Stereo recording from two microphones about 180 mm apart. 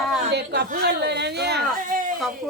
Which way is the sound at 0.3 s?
65° right (ahead or behind).